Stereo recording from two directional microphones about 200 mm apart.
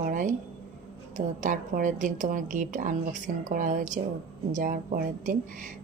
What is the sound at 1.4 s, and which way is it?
Speech, 40° right (ahead or behind).